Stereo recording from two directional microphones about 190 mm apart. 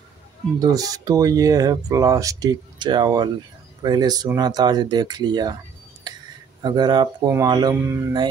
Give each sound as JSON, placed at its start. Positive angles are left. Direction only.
{"t": 0.6, "sound": "speech", "side_deg": -20}
{"t": 6.6, "sound": "speech", "side_deg": -20}